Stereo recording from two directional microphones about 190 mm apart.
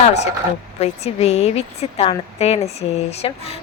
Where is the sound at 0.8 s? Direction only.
35° left (ahead or behind).